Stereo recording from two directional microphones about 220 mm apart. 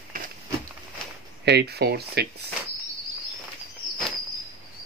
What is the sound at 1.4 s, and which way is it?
Speech, 45° right (ahead or behind).